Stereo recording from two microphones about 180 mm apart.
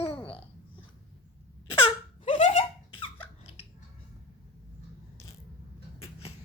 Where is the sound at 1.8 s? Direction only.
30° left (ahead or behind).